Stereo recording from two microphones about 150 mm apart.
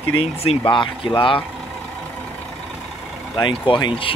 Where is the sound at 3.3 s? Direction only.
30° left (ahead or behind).